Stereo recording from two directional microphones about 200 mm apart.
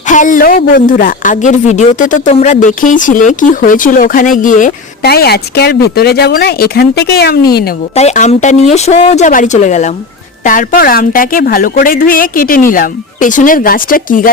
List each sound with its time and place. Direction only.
0.0 s a woman's voice: 40° left (ahead or behind)
7.9 s a woman's voice: 35° left (ahead or behind)